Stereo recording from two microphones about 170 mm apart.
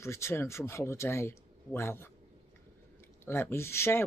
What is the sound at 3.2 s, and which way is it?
Speech, 15° left (ahead or behind).